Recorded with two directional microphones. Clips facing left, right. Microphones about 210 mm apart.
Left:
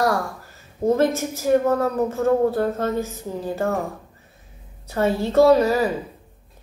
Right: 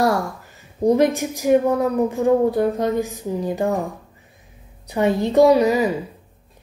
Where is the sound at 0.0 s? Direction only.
20° right (ahead or behind).